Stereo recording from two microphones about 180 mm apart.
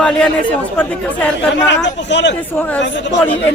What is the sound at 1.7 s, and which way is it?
Speech, 80° left.